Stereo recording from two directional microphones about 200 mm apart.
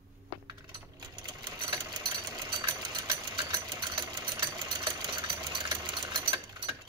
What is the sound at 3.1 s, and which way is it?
Engine, 20° right (ahead or behind).